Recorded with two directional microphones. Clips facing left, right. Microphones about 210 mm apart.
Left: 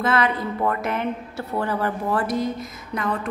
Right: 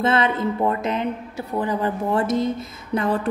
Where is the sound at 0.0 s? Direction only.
25° right (ahead or behind).